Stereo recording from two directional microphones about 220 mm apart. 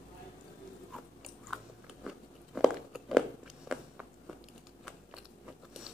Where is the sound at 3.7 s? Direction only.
5° right (ahead or behind).